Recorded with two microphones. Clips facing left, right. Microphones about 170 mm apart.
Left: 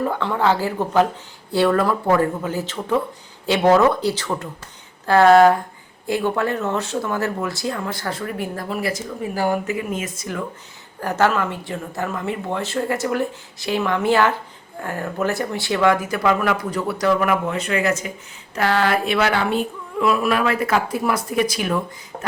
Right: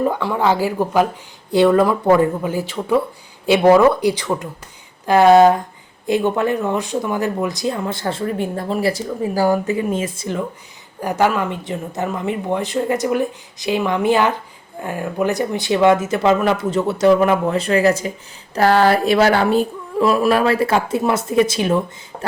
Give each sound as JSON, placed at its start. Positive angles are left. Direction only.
{"t": 0.0, "sound": "speech", "side_deg": -10}
{"t": 11.0, "sound": "speech", "side_deg": -15}